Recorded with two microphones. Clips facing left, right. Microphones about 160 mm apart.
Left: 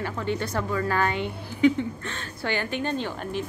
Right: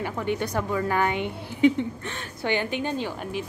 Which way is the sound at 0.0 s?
15° right (ahead or behind).